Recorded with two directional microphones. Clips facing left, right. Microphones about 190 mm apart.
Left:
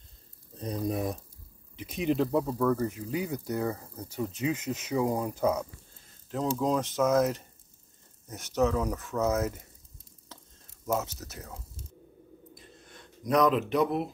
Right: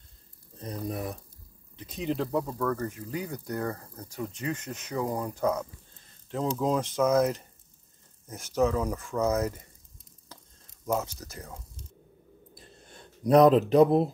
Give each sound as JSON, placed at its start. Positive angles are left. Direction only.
{"t": 0.6, "sound": "speech", "side_deg": 15}
{"t": 10.9, "sound": "speech", "side_deg": 5}
{"t": 12.5, "sound": "a sound", "side_deg": -30}